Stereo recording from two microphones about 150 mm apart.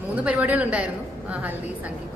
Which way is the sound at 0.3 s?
10° right (ahead or behind).